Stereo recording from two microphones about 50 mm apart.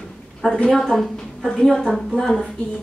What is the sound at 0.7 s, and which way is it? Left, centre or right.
A woman's voice, centre.